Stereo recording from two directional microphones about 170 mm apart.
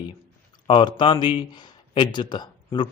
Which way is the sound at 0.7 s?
25° left (ahead or behind).